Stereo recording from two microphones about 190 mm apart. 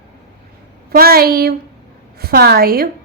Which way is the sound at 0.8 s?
55° right (ahead or behind).